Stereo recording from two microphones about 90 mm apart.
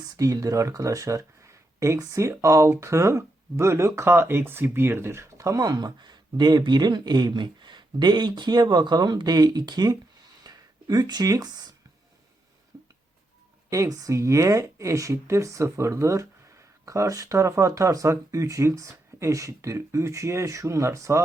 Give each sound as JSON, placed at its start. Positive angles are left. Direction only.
{"t": 0.0, "sound": "speech", "side_deg": -40}
{"t": 13.7, "sound": "speech", "side_deg": -40}